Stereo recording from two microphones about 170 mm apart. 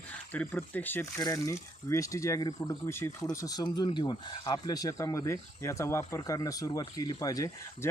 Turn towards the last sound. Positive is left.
turn(degrees=20)  # may be behind; listen again after turning